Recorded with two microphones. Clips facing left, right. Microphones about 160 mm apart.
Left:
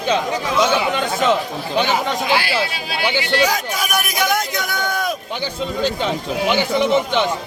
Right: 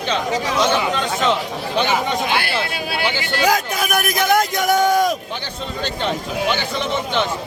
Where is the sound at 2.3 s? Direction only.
55° right (ahead or behind).